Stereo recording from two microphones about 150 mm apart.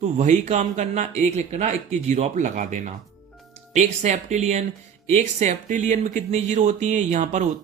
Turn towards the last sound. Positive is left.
turn(degrees=-55)  # may be behind; listen again after turning